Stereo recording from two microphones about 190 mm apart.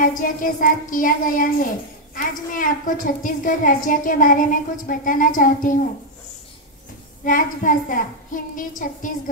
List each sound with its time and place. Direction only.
0.0 s a woman's voice: 45° left (ahead or behind)
7.2 s a woman's voice: 45° left (ahead or behind)